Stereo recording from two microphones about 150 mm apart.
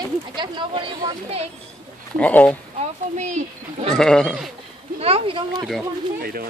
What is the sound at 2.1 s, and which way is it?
Speech, 10° left (ahead or behind).